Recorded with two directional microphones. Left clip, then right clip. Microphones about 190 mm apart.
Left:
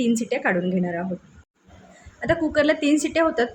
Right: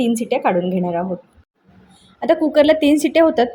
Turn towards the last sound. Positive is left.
turn(degrees=-20)  # may be behind; listen again after turning